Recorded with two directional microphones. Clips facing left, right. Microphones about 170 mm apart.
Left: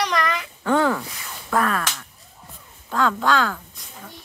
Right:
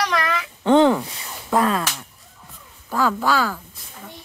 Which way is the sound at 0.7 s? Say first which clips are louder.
Right 5 dB; 25° right (ahead or behind).